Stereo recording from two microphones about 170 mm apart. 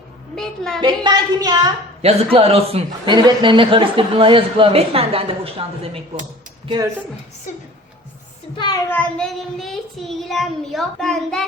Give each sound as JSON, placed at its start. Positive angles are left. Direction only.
{"t": 0.3, "sound": "child singing", "side_deg": 5}
{"t": 0.8, "sound": "a woman's voice", "side_deg": -25}
{"t": 2.0, "sound": "a man's voice", "side_deg": -35}
{"t": 6.7, "sound": "a woman's voice", "side_deg": -25}
{"t": 8.5, "sound": "speech", "side_deg": 25}
{"t": 8.9, "sound": "child singing", "side_deg": 5}